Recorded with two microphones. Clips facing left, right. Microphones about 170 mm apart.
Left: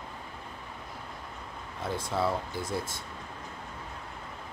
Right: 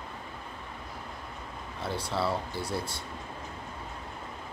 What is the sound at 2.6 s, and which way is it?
Speech, 50° left (ahead or behind).